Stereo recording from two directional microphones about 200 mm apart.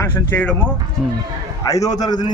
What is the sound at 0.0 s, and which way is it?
A man's voice, 10° left (ahead or behind).